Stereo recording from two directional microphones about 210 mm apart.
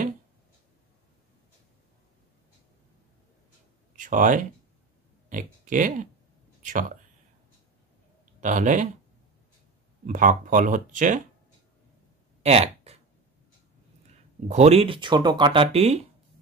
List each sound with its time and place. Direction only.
3.9 s speech: 35° right (ahead or behind)
8.4 s speech: 35° right (ahead or behind)
10.0 s speech: 40° right (ahead or behind)
12.4 s speech: 30° right (ahead or behind)
14.5 s speech: 30° right (ahead or behind)